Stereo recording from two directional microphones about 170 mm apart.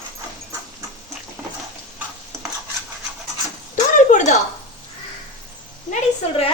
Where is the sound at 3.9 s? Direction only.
45° left (ahead or behind).